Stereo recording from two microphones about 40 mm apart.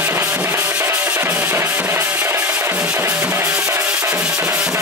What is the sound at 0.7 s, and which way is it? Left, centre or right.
Drum, right.